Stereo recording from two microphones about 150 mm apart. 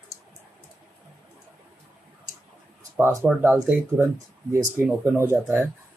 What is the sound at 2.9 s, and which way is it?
Speech, 15° right (ahead or behind).